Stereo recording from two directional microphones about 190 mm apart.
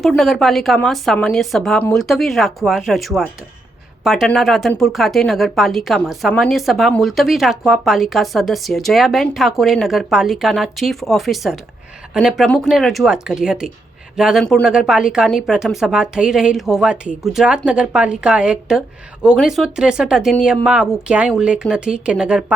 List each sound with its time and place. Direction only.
0.0 s speech: centre (ahead or behind)